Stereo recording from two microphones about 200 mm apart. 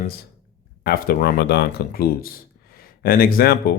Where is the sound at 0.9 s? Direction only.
50° left (ahead or behind).